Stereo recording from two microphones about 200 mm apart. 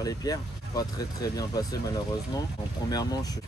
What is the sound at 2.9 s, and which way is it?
Speech, 20° left (ahead or behind).